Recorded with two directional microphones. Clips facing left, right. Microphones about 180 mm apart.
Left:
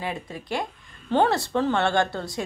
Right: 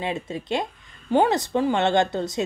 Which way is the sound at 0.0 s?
25° right (ahead or behind).